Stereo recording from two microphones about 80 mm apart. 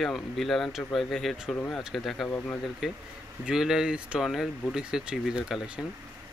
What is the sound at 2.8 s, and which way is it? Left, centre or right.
Speech, centre.